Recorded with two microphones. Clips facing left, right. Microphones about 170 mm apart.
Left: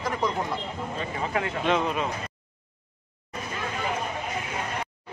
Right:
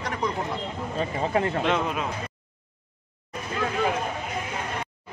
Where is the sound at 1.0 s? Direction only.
35° right (ahead or behind).